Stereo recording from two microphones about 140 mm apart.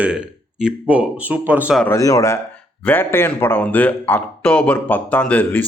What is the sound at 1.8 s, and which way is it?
A man's voice, 20° left (ahead or behind).